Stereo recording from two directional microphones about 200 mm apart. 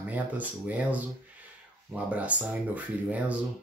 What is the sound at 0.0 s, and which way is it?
Speech, 10° right (ahead or behind).